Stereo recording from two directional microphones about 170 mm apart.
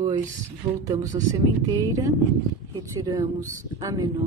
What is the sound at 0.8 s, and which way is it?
Speech, 20° right (ahead or behind).